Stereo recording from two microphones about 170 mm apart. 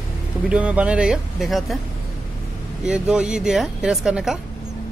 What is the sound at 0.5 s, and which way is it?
Speech, 5° right (ahead or behind).